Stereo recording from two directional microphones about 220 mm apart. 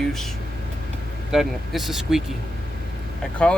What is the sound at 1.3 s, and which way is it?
Speech, centre (ahead or behind).